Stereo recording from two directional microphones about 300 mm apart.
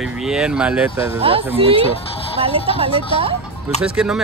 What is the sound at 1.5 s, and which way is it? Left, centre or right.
Speech, centre.